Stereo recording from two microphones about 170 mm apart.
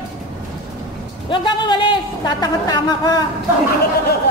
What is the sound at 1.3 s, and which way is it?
A woman's voice, 30° left (ahead or behind).